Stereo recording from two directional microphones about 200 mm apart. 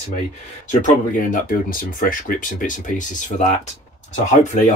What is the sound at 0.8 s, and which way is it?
Speech, 40° left (ahead or behind).